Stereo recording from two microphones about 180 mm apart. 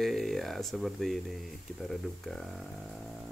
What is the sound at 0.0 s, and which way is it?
Speech, centre (ahead or behind).